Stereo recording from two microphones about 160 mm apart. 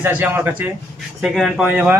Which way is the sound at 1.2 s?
Centre (ahead or behind).